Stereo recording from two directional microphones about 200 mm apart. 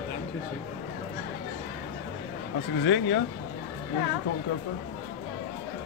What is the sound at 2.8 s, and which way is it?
Speech, 65° left (ahead or behind).